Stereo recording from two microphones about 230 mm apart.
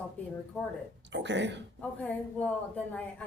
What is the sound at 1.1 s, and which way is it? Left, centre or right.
Speech, right.